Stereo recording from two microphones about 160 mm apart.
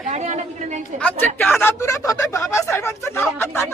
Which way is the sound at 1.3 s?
Centre (ahead or behind).